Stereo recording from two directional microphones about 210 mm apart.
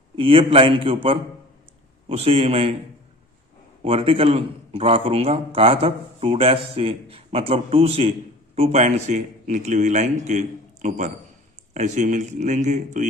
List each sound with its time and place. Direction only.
0.2 s a man's voice: 25° right (ahead or behind)
2.0 s a man's voice: 30° right (ahead or behind)
3.8 s a man's voice: 25° right (ahead or behind)